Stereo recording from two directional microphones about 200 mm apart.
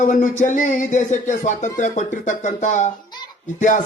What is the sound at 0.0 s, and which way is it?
A man's voice, 40° left (ahead or behind).